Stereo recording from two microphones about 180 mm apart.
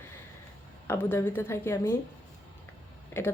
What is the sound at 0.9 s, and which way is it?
Speech, 10° left (ahead or behind).